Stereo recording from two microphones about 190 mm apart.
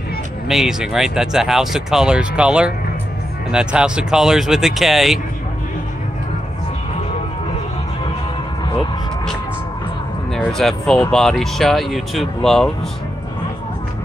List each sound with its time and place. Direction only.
0.5 s speech: centre (ahead or behind)
10.3 s speech: centre (ahead or behind)